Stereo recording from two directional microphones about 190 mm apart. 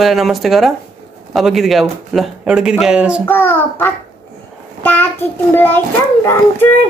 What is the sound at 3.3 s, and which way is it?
Speech, 10° left (ahead or behind).